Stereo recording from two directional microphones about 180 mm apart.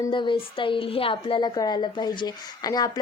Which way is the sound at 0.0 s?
25° left (ahead or behind).